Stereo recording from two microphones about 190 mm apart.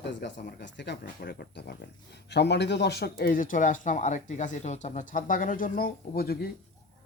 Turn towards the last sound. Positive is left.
turn(degrees=55)  # may be behind; listen again after turning